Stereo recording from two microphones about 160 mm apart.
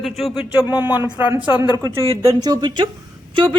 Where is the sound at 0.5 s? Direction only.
20° left (ahead or behind).